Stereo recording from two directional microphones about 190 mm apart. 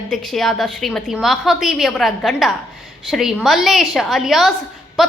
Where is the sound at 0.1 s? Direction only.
Centre (ahead or behind).